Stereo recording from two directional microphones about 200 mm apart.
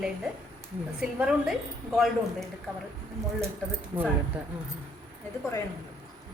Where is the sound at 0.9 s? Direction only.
5° right (ahead or behind).